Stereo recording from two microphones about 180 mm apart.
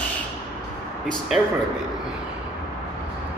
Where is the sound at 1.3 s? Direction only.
Centre (ahead or behind).